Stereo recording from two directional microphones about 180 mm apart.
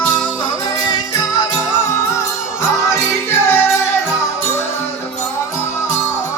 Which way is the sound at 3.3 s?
10° left (ahead or behind).